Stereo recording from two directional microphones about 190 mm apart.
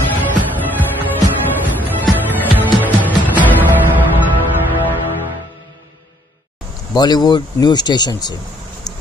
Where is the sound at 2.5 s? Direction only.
10° right (ahead or behind).